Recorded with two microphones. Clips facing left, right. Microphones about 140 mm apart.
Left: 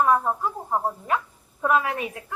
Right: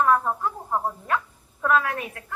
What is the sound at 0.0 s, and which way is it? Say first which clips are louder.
A woman's voice: even; 15° left (ahead or behind).